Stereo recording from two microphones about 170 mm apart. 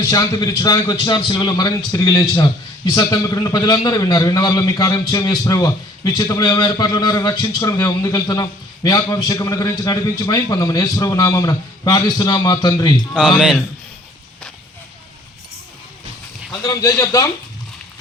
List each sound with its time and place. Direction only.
0.0 s a man's voice: 20° left (ahead or behind)
16.6 s a man's voice: 20° left (ahead or behind)